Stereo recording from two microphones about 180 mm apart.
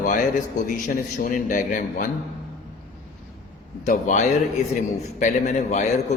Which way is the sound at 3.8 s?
45° left (ahead or behind).